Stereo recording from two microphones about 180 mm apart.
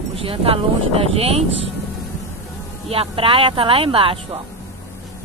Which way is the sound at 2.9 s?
30° right (ahead or behind).